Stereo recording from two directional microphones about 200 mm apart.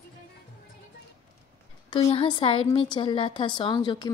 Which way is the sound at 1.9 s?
25° left (ahead or behind).